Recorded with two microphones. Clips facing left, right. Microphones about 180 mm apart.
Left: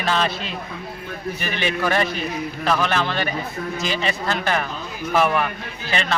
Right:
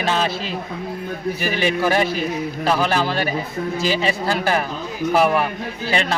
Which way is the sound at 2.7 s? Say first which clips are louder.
Right 2 dB; 30° right (ahead or behind).